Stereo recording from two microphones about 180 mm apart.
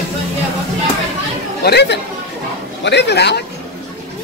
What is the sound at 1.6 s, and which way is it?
Speech, 65° left (ahead or behind).